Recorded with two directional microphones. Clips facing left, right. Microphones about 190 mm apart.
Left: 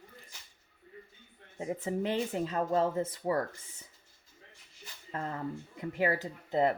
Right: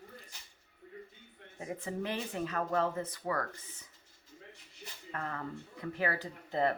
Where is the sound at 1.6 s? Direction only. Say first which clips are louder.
Left 5 dB; 20° left (ahead or behind).